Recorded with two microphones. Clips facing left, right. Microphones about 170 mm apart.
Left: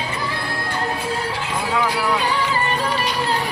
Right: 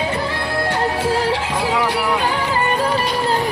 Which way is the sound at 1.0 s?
90° right.